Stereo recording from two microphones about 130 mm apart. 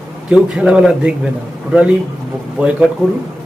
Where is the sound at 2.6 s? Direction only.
10° right (ahead or behind).